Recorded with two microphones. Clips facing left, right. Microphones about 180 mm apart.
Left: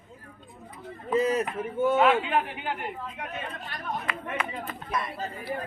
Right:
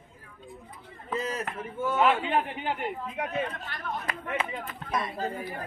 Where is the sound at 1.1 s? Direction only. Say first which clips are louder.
Left 8 dB; 15° left (ahead or behind).